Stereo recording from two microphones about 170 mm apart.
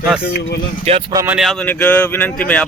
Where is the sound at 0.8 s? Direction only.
35° right (ahead or behind).